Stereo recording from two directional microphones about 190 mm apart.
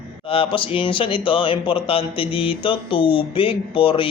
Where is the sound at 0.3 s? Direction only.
25° left (ahead or behind).